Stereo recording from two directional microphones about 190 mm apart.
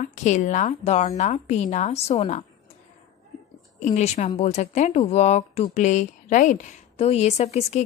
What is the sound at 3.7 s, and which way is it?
Speech, 35° left (ahead or behind).